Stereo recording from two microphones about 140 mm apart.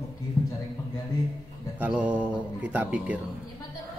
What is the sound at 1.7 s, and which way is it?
Music, 10° right (ahead or behind).